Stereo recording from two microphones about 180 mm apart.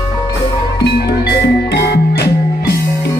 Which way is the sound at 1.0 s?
65° left (ahead or behind).